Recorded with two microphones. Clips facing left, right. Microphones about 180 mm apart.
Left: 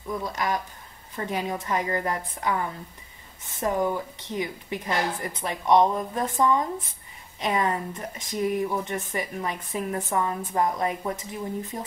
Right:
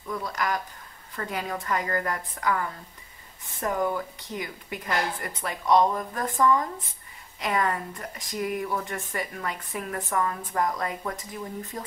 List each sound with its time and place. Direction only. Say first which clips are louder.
0.1 s speech: left 1 dB; 20° left (ahead or behind)